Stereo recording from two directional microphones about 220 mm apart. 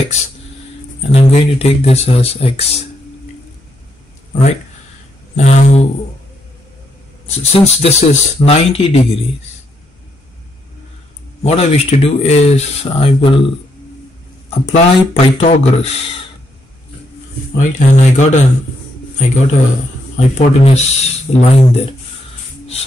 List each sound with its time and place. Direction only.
1.1 s speech: 25° left (ahead or behind)
5.3 s speech: 30° left (ahead or behind)
7.2 s speech: 30° left (ahead or behind)
11.4 s speech: 30° left (ahead or behind)
14.5 s speech: 30° left (ahead or behind)
17.6 s speech: 35° left (ahead or behind)